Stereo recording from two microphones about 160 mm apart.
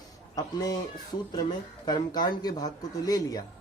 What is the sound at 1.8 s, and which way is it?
Speech, 25° left (ahead or behind).